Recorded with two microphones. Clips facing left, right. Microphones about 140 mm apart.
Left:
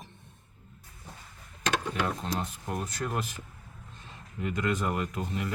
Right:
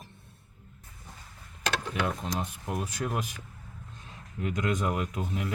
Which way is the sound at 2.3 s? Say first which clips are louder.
Even; 5° right (ahead or behind).